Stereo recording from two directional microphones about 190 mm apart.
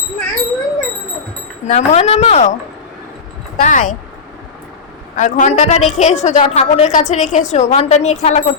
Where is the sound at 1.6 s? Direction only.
35° left (ahead or behind).